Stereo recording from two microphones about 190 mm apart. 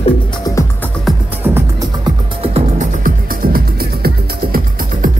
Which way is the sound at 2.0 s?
35° right (ahead or behind).